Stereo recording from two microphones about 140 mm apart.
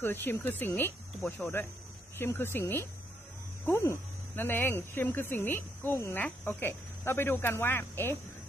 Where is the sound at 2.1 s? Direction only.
15° left (ahead or behind).